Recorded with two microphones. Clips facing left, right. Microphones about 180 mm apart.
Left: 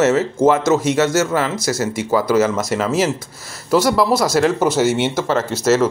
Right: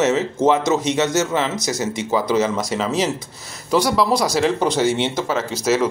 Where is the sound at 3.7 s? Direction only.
15° right (ahead or behind).